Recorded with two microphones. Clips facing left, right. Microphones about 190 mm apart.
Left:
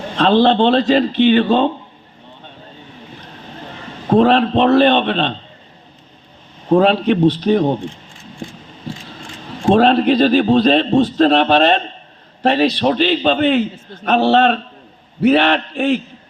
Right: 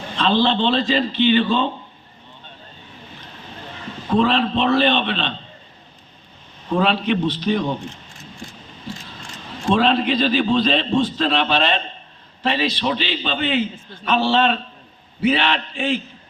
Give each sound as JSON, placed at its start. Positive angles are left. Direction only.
{"t": 0.2, "sound": "a man's voice", "side_deg": 50}
{"t": 4.1, "sound": "a man's voice", "side_deg": 50}
{"t": 6.7, "sound": "a man's voice", "side_deg": 45}
{"t": 9.6, "sound": "a man's voice", "side_deg": 50}